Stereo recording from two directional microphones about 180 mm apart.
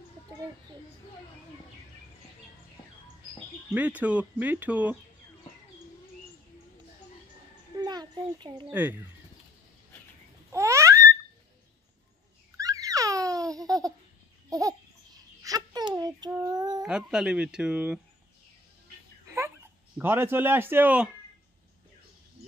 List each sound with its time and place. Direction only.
3.7 s speech: 10° right (ahead or behind)
7.7 s a sound: 25° right (ahead or behind)
10.5 s babbling: 15° right (ahead or behind)
12.5 s baby laughter: 20° right (ahead or behind)
14.5 s babbling: 20° right (ahead or behind)
16.8 s speech: 5° right (ahead or behind)
20.0 s speech: 10° right (ahead or behind)